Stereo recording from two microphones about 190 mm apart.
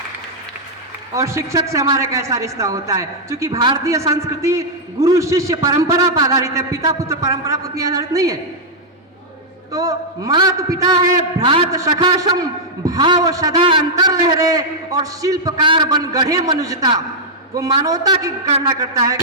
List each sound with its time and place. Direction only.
1.1 s speech: 15° right (ahead or behind)
9.7 s a man's voice: 20° right (ahead or behind)
18.4 s speech: 30° right (ahead or behind)
18.7 s a man's voice: 20° right (ahead or behind)